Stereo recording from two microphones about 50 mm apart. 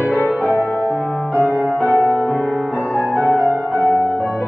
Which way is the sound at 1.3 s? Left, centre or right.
Left.